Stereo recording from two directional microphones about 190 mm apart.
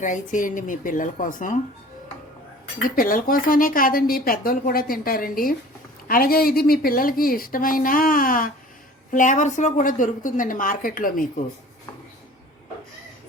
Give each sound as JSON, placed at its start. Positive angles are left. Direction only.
{"t": 0.0, "sound": "a woman's voice", "side_deg": 40}
{"t": 2.9, "sound": "a woman's voice", "side_deg": 45}